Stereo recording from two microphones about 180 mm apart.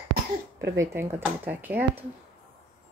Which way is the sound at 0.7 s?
15° right (ahead or behind).